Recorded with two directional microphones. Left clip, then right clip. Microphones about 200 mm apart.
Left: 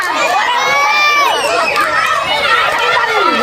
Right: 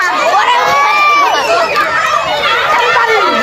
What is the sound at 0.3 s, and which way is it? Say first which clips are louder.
Children shouting: right 6 dB; 60° right (ahead or behind).